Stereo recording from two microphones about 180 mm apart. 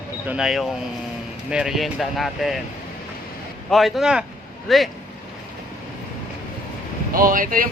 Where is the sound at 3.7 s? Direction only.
Centre (ahead or behind).